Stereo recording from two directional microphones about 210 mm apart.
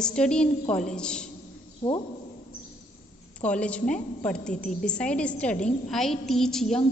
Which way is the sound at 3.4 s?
5° left (ahead or behind).